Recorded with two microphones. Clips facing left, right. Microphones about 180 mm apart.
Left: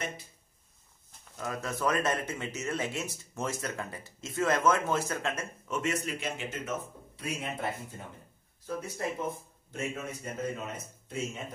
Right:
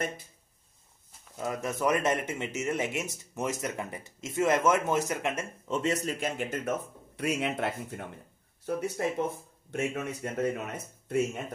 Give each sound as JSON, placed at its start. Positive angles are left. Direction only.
{"t": 1.4, "sound": "speech", "side_deg": -20}
{"t": 6.1, "sound": "speech", "side_deg": -45}
{"t": 7.2, "sound": "speech", "side_deg": -75}